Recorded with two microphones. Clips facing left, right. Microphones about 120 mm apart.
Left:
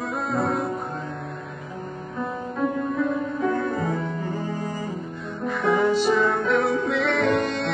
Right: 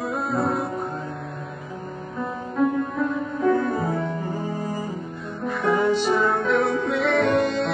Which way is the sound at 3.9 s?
25° right (ahead or behind).